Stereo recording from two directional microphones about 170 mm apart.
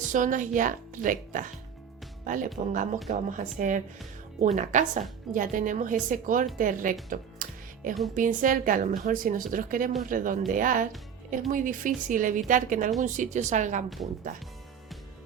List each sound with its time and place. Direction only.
0.1 s a woman's voice: 50° right (ahead or behind)
2.7 s a woman's voice: 50° right (ahead or behind)
7.4 s music: 55° right (ahead or behind)
8.1 s a woman's voice: 50° right (ahead or behind)